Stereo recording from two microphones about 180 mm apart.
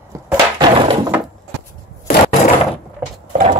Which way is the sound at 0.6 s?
25° right (ahead or behind).